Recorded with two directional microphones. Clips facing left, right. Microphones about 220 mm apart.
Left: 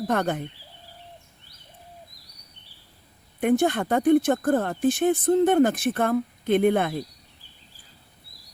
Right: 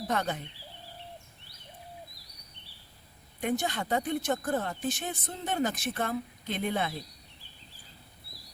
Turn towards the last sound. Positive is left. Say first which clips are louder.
# left 11 dB
turn(degrees=55)  # may be behind; listen again after turning